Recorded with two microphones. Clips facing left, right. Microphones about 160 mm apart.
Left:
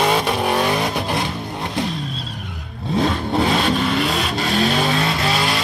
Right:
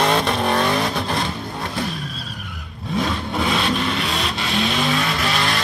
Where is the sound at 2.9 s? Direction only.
30° left (ahead or behind).